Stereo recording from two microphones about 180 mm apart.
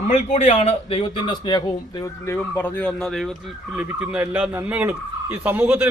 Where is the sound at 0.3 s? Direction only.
35° left (ahead or behind).